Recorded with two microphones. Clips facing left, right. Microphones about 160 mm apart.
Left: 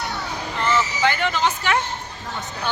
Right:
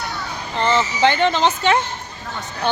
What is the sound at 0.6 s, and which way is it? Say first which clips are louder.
A woman's voice: right 4 dB; 30° right (ahead or behind).